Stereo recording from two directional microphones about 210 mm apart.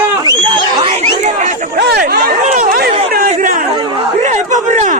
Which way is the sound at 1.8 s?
50° right (ahead or behind).